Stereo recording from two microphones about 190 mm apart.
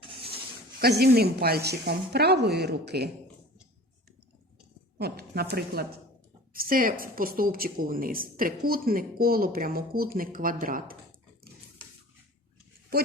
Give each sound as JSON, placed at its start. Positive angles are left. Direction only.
{"t": 0.0, "sound": "a sound", "side_deg": -30}
{"t": 0.8, "sound": "speech", "side_deg": -55}
{"t": 4.9, "sound": "a woman's voice", "side_deg": -55}